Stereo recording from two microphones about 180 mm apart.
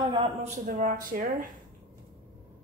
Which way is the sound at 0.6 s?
50° right (ahead or behind).